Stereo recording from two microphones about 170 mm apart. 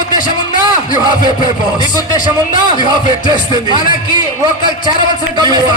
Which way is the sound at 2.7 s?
25° right (ahead or behind).